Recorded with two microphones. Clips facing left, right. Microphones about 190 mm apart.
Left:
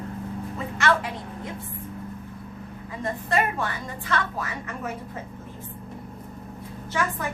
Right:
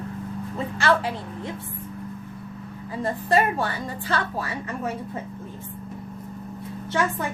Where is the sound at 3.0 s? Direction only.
30° right (ahead or behind).